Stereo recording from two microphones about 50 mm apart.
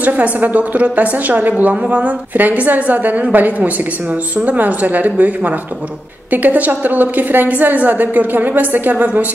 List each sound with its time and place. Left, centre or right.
0.0 s a woman's voice: right